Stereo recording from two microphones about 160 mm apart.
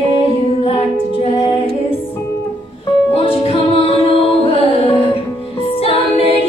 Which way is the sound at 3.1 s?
35° left (ahead or behind).